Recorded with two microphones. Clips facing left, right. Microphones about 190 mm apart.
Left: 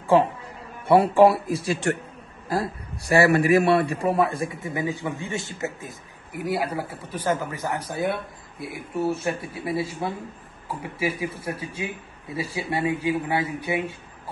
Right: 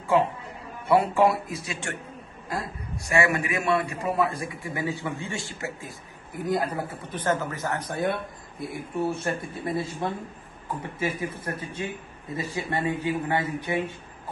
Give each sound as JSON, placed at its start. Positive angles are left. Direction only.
{"t": 0.8, "sound": "a man's voice", "side_deg": 30}